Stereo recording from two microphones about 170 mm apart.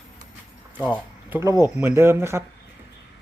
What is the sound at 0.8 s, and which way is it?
Speech, 10° right (ahead or behind).